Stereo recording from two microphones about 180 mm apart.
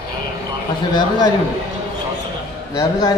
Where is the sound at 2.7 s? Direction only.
20° left (ahead or behind).